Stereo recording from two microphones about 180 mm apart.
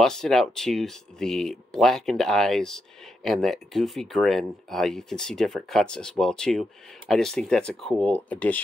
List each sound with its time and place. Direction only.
0.0 s speech: centre (ahead or behind)